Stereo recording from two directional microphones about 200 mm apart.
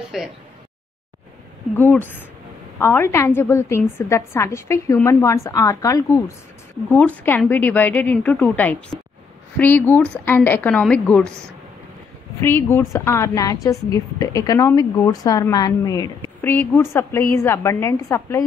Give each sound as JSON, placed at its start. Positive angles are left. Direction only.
{"t": 0.1, "sound": "speech", "side_deg": 0}
{"t": 1.8, "sound": "a woman's voice", "side_deg": 10}
{"t": 12.4, "sound": "a woman's voice", "side_deg": 10}